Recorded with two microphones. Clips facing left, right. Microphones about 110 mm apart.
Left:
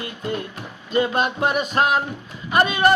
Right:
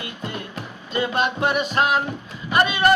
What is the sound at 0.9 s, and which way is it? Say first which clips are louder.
Speech: left 2 dB; 40° left (ahead or behind).